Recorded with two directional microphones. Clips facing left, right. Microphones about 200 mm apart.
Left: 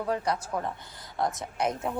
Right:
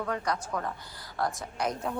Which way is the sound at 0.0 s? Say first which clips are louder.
Left 2 dB; 25° left (ahead or behind).